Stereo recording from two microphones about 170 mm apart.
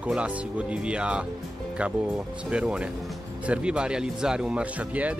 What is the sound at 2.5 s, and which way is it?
Speech, 5° right (ahead or behind).